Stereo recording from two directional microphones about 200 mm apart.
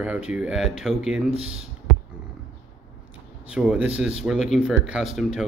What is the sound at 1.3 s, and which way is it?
Speech, 30° right (ahead or behind).